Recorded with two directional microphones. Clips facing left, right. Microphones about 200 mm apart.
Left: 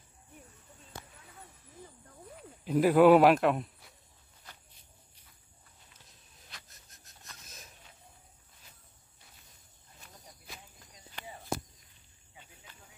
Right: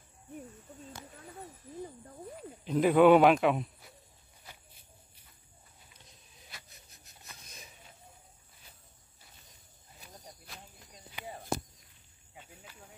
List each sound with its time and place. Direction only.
2.6 s speech: 5° left (ahead or behind)
6.5 s wheeze: centre (ahead or behind)
9.9 s a sound: centre (ahead or behind)